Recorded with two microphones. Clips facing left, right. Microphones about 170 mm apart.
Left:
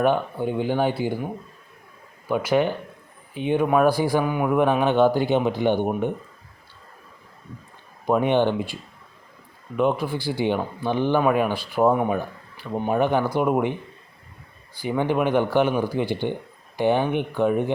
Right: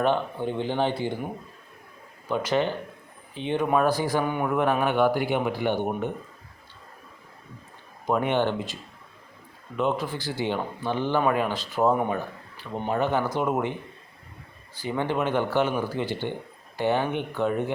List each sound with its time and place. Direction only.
0.0 s speech: 10° left (ahead or behind)
8.0 s speech: 15° left (ahead or behind)
14.8 s speech: 15° left (ahead or behind)